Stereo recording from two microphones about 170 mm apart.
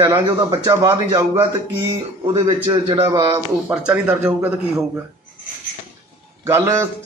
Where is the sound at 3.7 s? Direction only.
5° right (ahead or behind).